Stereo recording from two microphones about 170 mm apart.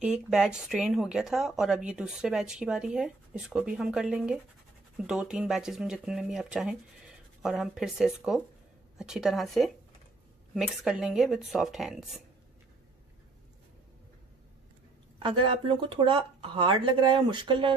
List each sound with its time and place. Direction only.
0.0 s speech: 5° right (ahead or behind)
15.1 s speech: 30° right (ahead or behind)